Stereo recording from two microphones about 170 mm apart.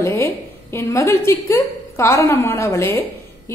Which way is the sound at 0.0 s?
15° left (ahead or behind).